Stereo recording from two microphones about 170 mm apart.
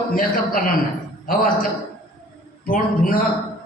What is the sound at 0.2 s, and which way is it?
Speech, 55° left (ahead or behind).